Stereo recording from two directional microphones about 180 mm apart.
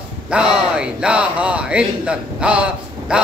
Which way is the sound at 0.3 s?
5° right (ahead or behind).